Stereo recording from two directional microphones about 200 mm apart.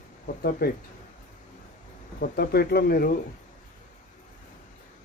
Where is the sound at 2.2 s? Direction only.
50° left (ahead or behind).